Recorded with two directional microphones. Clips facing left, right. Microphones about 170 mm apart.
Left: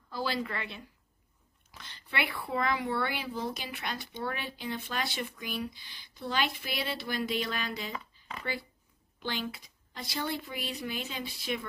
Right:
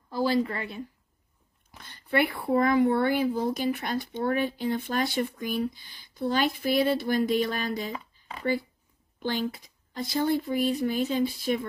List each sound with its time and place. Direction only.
0.1 s speech: 40° right (ahead or behind)
2.0 s speech: 40° right (ahead or behind)
9.2 s speech: 50° right (ahead or behind)